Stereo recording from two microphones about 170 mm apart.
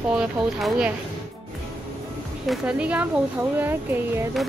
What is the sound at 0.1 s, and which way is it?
Speech, 5° right (ahead or behind).